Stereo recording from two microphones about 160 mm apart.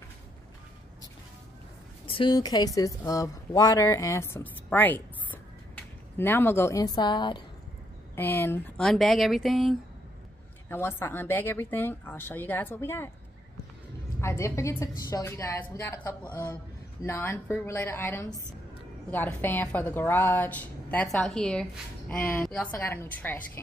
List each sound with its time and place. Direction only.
2.0 s a woman's voice: 30° left (ahead or behind)
8.2 s speech: 15° left (ahead or behind)
10.7 s a woman's voice: 15° left (ahead or behind)
14.2 s a woman's voice: 15° left (ahead or behind)